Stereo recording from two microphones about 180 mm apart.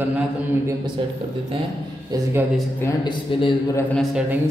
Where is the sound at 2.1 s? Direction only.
20° right (ahead or behind).